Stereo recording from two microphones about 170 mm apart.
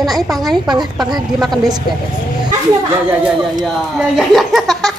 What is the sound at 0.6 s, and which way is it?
Speech, 25° right (ahead or behind).